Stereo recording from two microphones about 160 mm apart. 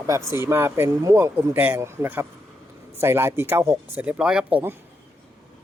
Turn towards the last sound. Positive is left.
turn(degrees=-10)  # may be behind; listen again after turning